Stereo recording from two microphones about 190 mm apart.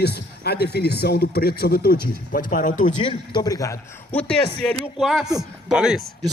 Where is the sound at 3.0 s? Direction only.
20° left (ahead or behind); by 6.0 s 5° right (ahead or behind).